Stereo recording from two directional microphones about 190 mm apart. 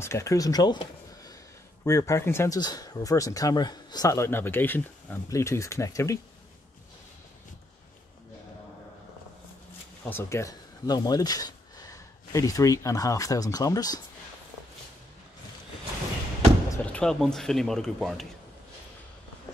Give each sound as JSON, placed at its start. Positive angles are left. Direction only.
{"t": 0.0, "sound": "speech", "side_deg": 15}
{"t": 10.0, "sound": "speech", "side_deg": 15}
{"t": 16.7, "sound": "speech", "side_deg": 5}